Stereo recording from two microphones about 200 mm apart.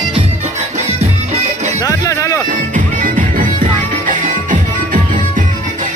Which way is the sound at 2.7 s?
40° right (ahead or behind).